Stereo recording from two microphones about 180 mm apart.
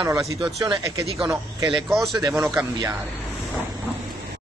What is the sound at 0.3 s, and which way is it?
A man's voice, 20° right (ahead or behind).